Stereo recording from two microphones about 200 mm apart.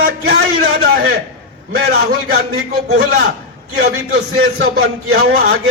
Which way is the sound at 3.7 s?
50° right (ahead or behind).